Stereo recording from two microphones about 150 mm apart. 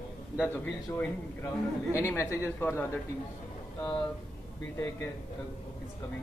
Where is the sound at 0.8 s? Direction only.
15° left (ahead or behind).